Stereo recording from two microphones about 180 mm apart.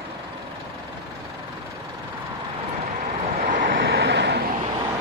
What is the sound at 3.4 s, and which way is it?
Vehicle, 50° right (ahead or behind).